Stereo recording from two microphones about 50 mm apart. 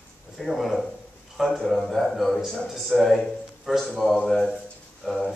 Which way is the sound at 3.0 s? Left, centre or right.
Centre.